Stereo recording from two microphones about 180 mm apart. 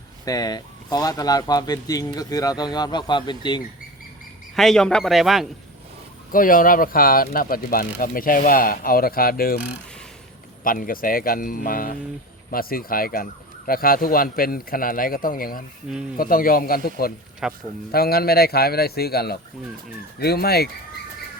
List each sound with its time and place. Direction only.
0.3 s speech: 20° left (ahead or behind)
4.5 s speech: centre (ahead or behind)
6.3 s speech: 50° left (ahead or behind)
10.6 s speech: 50° left (ahead or behind)
17.4 s speech: 5° right (ahead or behind)
17.9 s a man's voice: 60° left (ahead or behind)